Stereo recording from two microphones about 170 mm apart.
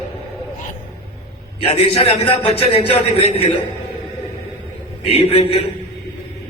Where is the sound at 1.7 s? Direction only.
35° left (ahead or behind).